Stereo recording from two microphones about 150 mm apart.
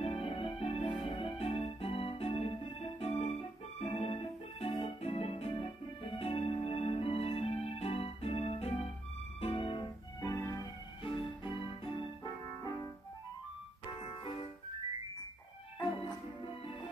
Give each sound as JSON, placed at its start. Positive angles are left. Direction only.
{"t": 0.0, "sound": "music", "side_deg": 40}
{"t": 11.1, "sound": "music", "side_deg": 35}